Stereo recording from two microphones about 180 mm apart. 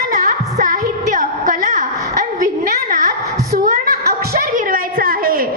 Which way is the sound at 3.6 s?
50° right (ahead or behind).